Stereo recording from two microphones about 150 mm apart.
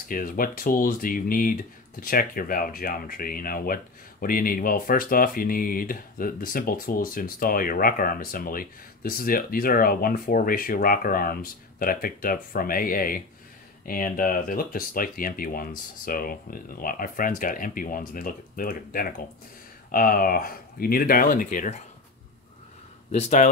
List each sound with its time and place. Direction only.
0.1 s speech: 70° left (ahead or behind)
23.1 s speech: 55° left (ahead or behind)